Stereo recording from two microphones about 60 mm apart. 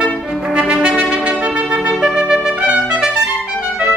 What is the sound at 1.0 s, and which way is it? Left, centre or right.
Music, centre.